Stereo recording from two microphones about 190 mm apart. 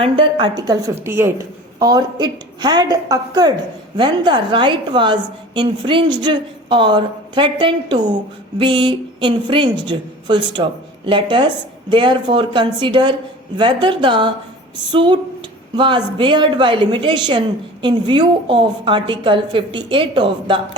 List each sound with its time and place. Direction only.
0.0 s a woman's voice: 25° right (ahead or behind)